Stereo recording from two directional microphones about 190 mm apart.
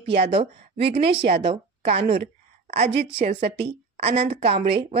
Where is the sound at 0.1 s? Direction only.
30° right (ahead or behind).